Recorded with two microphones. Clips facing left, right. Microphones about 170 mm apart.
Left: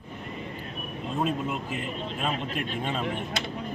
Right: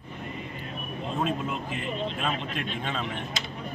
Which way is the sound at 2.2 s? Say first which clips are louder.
Left 1 dB; 5° left (ahead or behind).